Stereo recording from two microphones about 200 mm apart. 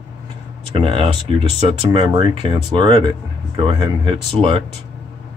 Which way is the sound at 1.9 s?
25° right (ahead or behind).